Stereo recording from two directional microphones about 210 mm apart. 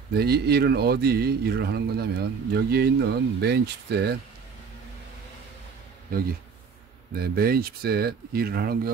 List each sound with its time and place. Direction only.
0.1 s a man's voice: 50° right (ahead or behind)
7.2 s a man's voice: 45° right (ahead or behind)